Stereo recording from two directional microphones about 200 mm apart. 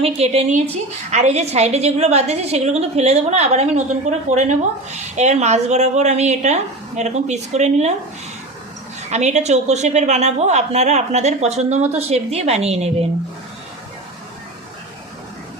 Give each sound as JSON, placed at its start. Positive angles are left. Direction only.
{"t": 0.0, "sound": "speech", "side_deg": -30}
{"t": 9.0, "sound": "speech", "side_deg": -35}